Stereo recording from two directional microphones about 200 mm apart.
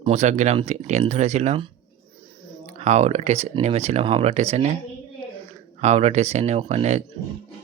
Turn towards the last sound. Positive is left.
turn(degrees=-35)  # may be behind; listen again after turning